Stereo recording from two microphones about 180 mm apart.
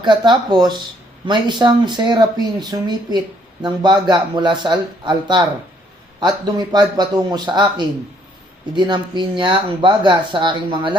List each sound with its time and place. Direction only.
0.0 s speech: 25° right (ahead or behind)